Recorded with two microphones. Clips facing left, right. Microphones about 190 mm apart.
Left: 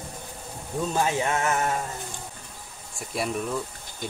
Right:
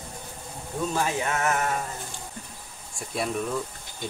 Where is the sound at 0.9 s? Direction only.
25° left (ahead or behind).